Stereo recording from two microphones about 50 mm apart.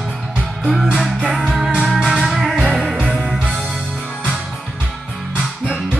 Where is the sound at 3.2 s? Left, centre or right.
Right.